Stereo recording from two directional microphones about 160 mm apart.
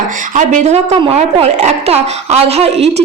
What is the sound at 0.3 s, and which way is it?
A woman's voice, 45° right (ahead or behind).